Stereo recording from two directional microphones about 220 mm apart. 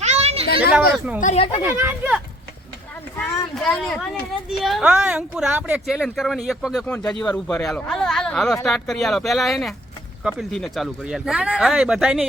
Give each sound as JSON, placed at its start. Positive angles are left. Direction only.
{"t": 0.0, "sound": "children playing", "side_deg": -30}
{"t": 0.9, "sound": "speech", "side_deg": -5}
{"t": 1.2, "sound": "speech", "side_deg": 30}
{"t": 1.6, "sound": "speech", "side_deg": -10}
{"t": 3.2, "sound": "speech", "side_deg": 5}